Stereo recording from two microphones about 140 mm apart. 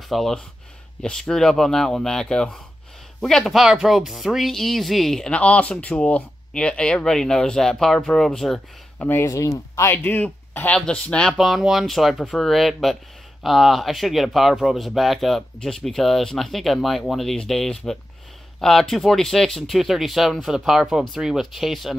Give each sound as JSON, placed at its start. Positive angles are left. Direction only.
{"t": 0.1, "sound": "speech", "side_deg": 0}
{"t": 9.0, "sound": "speech", "side_deg": 15}
{"t": 10.1, "sound": "speech", "side_deg": 10}